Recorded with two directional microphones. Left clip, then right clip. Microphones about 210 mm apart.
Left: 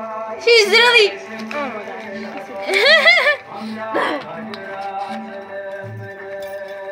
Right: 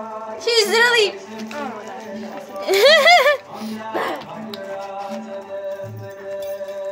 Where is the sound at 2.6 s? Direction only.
80° right.